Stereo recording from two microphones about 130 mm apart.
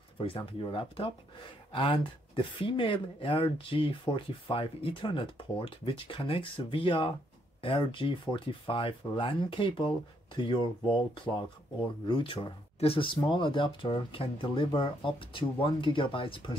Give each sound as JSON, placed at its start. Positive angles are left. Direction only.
{"t": 0.4, "sound": "speech", "side_deg": 40}